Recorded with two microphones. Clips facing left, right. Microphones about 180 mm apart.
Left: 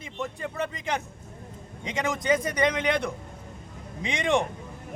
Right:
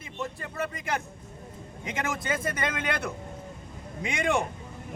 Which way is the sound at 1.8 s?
20° left (ahead or behind).